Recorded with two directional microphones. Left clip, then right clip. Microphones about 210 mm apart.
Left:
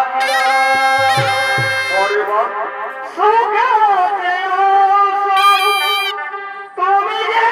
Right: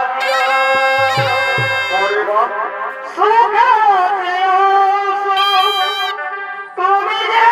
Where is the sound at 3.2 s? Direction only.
15° right (ahead or behind).